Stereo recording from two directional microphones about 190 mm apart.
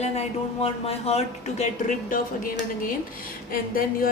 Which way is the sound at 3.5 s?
45° left (ahead or behind).